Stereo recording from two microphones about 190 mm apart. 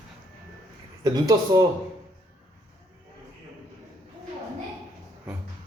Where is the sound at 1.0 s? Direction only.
20° right (ahead or behind).